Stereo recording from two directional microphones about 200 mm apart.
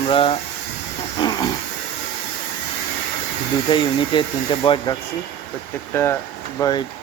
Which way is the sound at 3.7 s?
25° left (ahead or behind).